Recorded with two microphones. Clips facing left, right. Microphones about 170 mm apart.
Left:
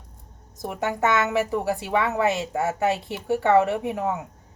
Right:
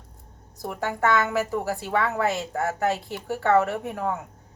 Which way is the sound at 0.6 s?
20° left (ahead or behind).